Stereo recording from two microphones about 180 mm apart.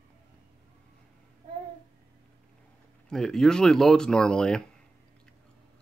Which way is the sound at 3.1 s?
5° left (ahead or behind).